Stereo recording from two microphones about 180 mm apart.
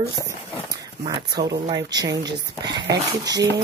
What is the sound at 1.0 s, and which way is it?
Speech, 25° right (ahead or behind).